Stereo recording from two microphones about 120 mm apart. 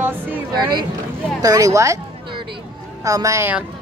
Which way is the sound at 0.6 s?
40° right (ahead or behind).